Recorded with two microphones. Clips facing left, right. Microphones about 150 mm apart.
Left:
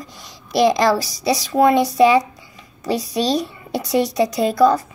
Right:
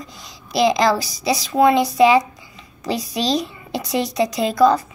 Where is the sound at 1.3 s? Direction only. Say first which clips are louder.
Even; 40° left (ahead or behind).